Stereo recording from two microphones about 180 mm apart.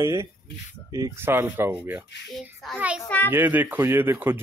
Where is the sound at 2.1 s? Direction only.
70° left (ahead or behind).